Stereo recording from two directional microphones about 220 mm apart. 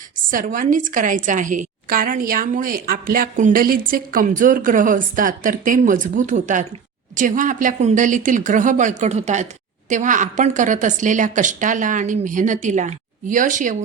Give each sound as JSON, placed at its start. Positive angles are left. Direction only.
{"t": 0.3, "sound": "a woman's voice", "side_deg": -40}